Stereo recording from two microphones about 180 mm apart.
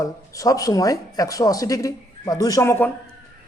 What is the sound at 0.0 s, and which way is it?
Speech, 20° left (ahead or behind).